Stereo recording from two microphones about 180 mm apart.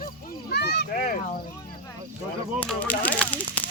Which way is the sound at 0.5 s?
70° left (ahead or behind).